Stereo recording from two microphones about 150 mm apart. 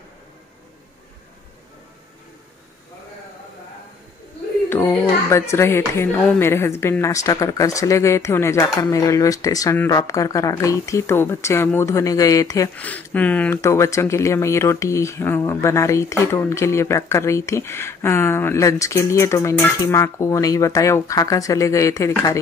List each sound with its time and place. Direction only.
4.6 s speech: 15° left (ahead or behind)
12.7 s speech: 10° left (ahead or behind)